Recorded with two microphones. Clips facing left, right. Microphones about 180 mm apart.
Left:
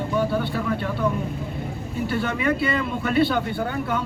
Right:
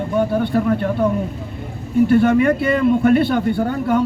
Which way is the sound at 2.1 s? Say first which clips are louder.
Right 9 dB; 50° right (ahead or behind).